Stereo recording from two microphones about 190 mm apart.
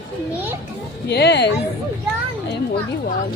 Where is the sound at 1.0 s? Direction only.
60° left (ahead or behind).